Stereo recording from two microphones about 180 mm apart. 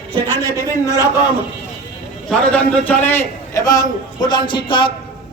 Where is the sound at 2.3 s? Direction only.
5° left (ahead or behind); by 4.9 s 25° left (ahead or behind).